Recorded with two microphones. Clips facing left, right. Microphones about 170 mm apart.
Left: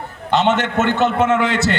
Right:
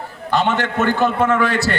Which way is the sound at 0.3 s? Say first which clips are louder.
Left 2 dB; 20° left (ahead or behind).